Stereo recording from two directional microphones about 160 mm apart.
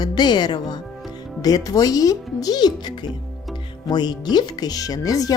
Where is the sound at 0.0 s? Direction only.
25° left (ahead or behind).